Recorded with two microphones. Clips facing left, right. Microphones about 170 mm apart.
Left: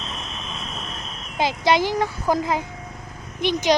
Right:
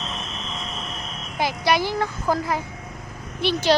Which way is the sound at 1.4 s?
20° left (ahead or behind).